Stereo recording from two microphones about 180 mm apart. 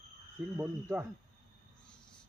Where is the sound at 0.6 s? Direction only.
10° right (ahead or behind).